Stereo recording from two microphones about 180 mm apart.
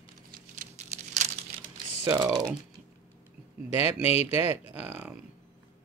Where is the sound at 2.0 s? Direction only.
20° right (ahead or behind).